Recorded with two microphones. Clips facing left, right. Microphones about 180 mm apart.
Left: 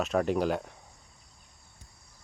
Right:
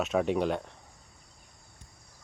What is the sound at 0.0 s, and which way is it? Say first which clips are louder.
Speech: even; centre (ahead or behind).